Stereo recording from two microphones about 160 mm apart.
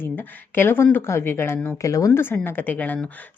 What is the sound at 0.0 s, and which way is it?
A woman's voice, 10° left (ahead or behind).